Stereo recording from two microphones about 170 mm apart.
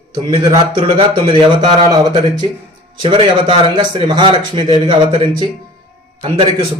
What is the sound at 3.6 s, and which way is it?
A man's voice, 30° right (ahead or behind).